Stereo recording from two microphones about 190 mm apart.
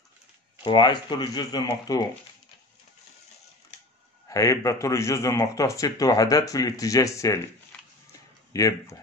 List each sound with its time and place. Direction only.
0.7 s speech: 25° left (ahead or behind)
4.3 s a man's voice: 15° left (ahead or behind)
8.5 s a man's voice: 15° left (ahead or behind)